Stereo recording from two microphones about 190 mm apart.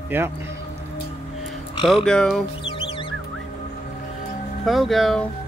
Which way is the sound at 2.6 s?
25° left (ahead or behind).